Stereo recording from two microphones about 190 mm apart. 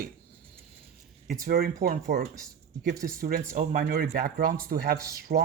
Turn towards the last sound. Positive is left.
turn(degrees=-50)  # may be behind; listen again after turning